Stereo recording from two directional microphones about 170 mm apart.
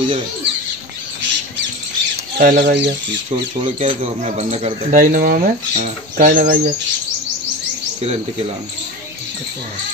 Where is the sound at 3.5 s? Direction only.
40° right (ahead or behind).